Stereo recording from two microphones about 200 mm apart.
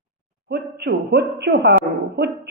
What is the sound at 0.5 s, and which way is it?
A woman's voice, 55° right (ahead or behind).